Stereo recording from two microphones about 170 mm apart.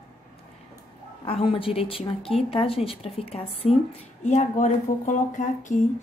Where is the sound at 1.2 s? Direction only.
35° left (ahead or behind).